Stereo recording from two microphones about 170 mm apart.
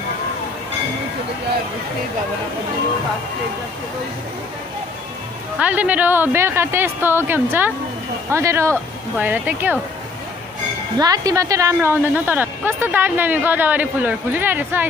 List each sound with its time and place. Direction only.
5.6 s a woman's voice: 10° right (ahead or behind)
11.0 s a woman's voice: 20° right (ahead or behind)